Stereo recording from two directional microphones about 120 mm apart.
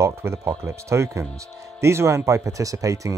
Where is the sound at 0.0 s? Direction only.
25° right (ahead or behind).